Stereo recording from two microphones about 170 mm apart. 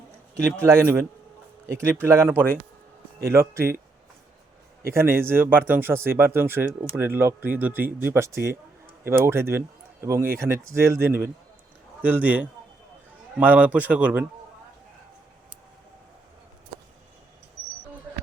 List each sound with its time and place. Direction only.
0.3 s speech: 15° right (ahead or behind)
2.3 s speech: 10° left (ahead or behind)
3.3 s speech: 15° right (ahead or behind)
4.9 s speech: 15° right (ahead or behind)